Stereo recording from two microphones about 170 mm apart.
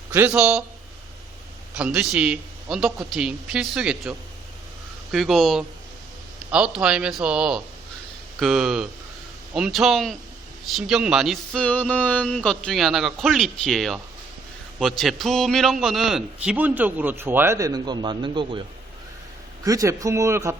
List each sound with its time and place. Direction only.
0.1 s a man's voice: 10° right (ahead or behind)
1.7 s speech: 5° right (ahead or behind)
5.1 s a man's voice: centre (ahead or behind); by 18.6 s 25° right (ahead or behind)
19.6 s a man's voice: 20° right (ahead or behind)